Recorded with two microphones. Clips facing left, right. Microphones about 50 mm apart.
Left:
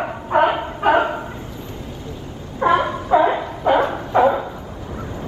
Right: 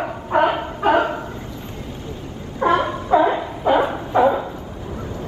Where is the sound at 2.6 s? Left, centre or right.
Centre.